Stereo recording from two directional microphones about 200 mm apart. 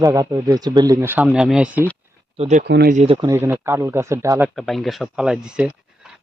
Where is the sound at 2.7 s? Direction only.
55° right (ahead or behind).